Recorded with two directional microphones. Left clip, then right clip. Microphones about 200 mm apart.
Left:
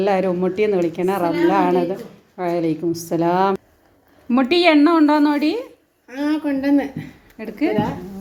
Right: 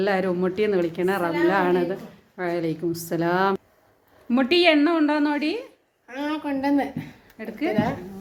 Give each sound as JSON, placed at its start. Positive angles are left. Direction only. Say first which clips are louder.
{"t": 0.0, "sound": "a woman's voice", "louder": "left 4 dB", "side_deg": -5}
{"t": 2.8, "sound": "a woman's voice", "louder": "left 5 dB", "side_deg": -20}
{"t": 3.1, "sound": "a woman's voice", "louder": "left 4 dB", "side_deg": 0}
{"t": 6.7, "sound": "speech", "louder": "left 4 dB", "side_deg": -15}
{"t": 7.3, "sound": "a woman's voice", "louder": "left 6 dB", "side_deg": 15}